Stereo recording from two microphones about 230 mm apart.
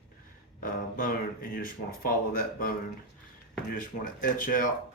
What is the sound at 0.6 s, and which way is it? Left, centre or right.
Speech, left.